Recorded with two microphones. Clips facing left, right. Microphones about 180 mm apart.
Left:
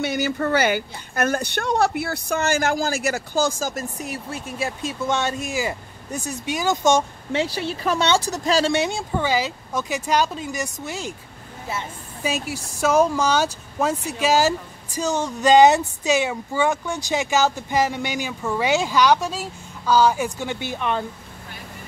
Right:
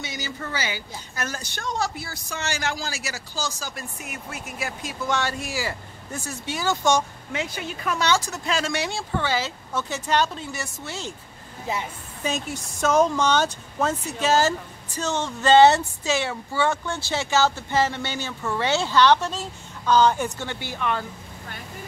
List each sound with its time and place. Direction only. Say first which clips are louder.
0.0 s speech: left 11 dB; 60° left (ahead or behind); by 11.1 s 15° left (ahead or behind)
12.2 s speech: left 2 dB; 10° left (ahead or behind)